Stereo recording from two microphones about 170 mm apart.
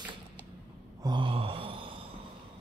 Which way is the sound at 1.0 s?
30° right (ahead or behind).